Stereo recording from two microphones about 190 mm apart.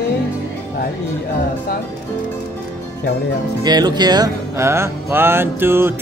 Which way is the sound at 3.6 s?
20° right (ahead or behind).